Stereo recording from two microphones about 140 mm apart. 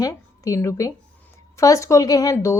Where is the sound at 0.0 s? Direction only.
25° left (ahead or behind).